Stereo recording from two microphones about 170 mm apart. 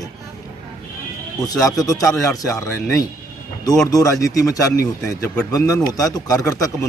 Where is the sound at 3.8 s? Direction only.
20° left (ahead or behind).